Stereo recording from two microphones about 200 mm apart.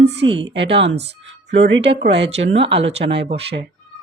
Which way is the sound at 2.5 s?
25° right (ahead or behind).